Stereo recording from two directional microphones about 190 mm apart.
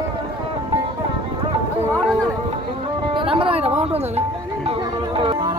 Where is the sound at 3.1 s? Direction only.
30° right (ahead or behind).